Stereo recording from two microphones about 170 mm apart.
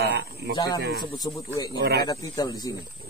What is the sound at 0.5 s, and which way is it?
Speech, 20° left (ahead or behind).